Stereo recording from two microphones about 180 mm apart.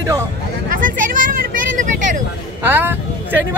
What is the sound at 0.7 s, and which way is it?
Vehicle, 50° right (ahead or behind).